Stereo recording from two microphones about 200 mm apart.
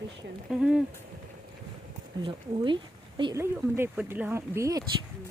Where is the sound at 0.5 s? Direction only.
5° right (ahead or behind).